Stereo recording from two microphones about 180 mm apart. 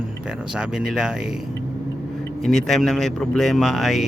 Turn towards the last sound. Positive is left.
turn(degrees=0)  # may be behind; listen again after turning